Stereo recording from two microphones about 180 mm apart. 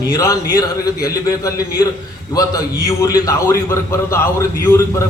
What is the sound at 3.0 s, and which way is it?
A man's voice, 20° left (ahead or behind).